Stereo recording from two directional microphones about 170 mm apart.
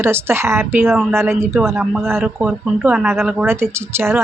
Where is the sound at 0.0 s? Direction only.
15° right (ahead or behind).